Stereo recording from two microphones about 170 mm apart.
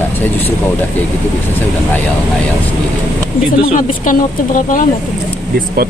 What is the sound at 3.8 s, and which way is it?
Speech, 50° left (ahead or behind).